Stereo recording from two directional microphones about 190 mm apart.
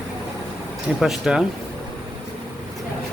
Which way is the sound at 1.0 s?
Centre (ahead or behind).